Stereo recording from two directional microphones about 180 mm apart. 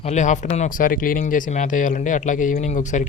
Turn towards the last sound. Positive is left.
turn(degrees=45)  # may be behind; listen again after turning